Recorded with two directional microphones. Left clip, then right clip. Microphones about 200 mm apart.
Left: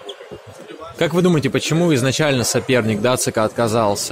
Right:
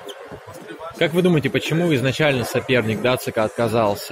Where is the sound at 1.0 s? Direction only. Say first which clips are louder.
Left 1 dB; 25° left (ahead or behind).